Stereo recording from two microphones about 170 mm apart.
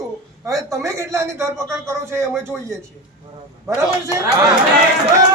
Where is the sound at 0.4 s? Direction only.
20° right (ahead or behind).